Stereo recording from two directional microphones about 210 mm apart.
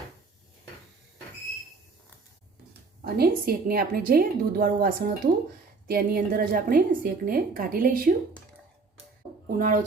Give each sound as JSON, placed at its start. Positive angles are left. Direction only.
{"t": 3.0, "sound": "a woman's voice", "side_deg": -45}
{"t": 9.6, "sound": "speech", "side_deg": -40}